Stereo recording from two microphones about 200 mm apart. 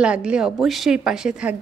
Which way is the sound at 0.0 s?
5° right (ahead or behind).